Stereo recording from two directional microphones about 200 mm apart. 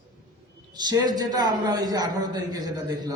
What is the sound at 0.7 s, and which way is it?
A man's voice, 20° right (ahead or behind).